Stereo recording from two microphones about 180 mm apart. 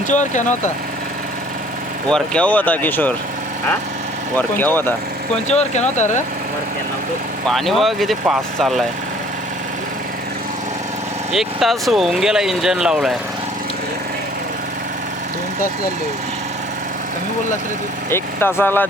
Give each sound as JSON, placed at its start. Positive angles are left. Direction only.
{"t": 0.1, "sound": "speech", "side_deg": 45}
{"t": 2.0, "sound": "speech", "side_deg": 5}
{"t": 4.4, "sound": "speech", "side_deg": 10}
{"t": 5.5, "sound": "speech", "side_deg": 40}
{"t": 7.4, "sound": "speech", "side_deg": 0}
{"t": 11.3, "sound": "speech", "side_deg": 0}
{"t": 18.1, "sound": "speech", "side_deg": 15}